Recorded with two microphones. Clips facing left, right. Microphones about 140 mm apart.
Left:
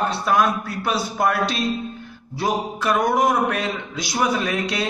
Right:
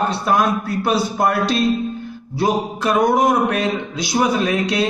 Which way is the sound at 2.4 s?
25° right (ahead or behind).